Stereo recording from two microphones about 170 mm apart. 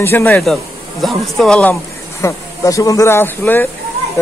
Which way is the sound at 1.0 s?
Centre (ahead or behind).